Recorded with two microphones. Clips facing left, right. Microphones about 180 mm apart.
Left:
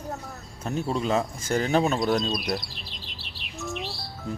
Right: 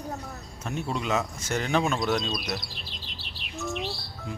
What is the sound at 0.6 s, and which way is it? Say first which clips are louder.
Speech: left 4 dB; 35° left (ahead or behind).